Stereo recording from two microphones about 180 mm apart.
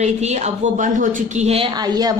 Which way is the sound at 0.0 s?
40° right (ahead or behind).